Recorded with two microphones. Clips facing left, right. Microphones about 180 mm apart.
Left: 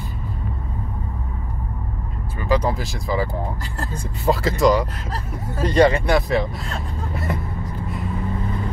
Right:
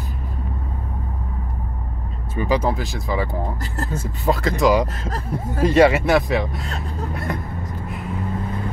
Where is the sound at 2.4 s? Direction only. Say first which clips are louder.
Even; 15° right (ahead or behind).